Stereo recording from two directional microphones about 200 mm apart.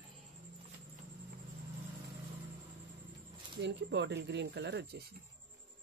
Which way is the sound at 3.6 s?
60° right (ahead or behind).